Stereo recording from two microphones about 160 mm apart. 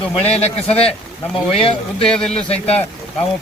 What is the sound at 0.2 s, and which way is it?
A man's voice, 40° left (ahead or behind).